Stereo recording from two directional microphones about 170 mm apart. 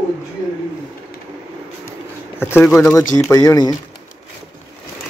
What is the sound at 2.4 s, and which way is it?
Speech, 10° left (ahead or behind).